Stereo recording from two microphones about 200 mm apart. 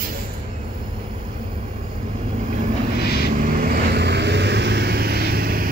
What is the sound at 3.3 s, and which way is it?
Vehicle, 45° right (ahead or behind).